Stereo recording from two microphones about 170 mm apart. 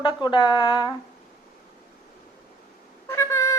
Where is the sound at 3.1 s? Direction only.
15° left (ahead or behind).